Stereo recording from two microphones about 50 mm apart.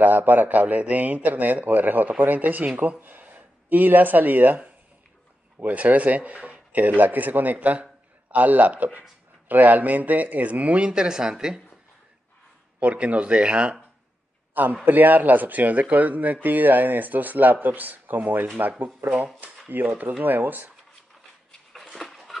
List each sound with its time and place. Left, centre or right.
0.0 s a man's voice: right; by 11.6 s centre
12.8 s a man's voice: right
14.5 s a man's voice: right
21.9 s a sound: centre